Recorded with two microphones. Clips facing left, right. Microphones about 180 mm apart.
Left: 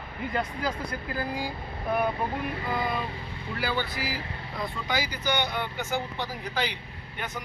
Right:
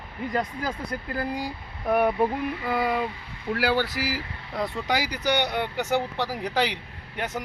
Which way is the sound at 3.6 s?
85° right.